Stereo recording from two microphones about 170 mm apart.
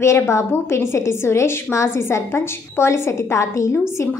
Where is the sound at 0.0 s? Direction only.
15° left (ahead or behind).